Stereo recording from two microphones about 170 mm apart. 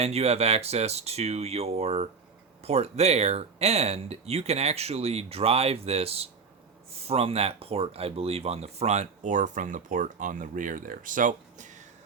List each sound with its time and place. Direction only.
0.0 s speech: 40° right (ahead or behind)